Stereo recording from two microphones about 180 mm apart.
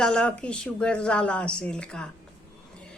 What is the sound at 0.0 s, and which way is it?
A woman's voice, 5° left (ahead or behind).